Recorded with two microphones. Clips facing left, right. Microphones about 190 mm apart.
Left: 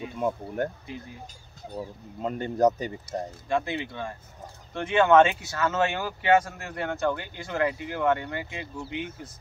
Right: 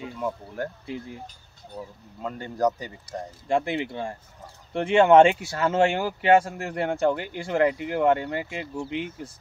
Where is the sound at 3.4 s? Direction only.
30° right (ahead or behind).